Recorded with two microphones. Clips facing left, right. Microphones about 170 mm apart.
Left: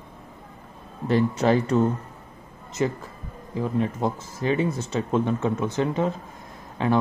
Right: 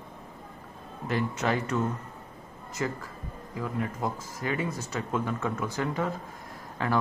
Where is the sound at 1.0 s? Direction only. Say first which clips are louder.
Left 8 dB; 30° left (ahead or behind).